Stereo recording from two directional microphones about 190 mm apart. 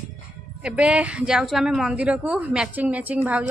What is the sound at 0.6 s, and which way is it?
A woman's voice, 5° right (ahead or behind).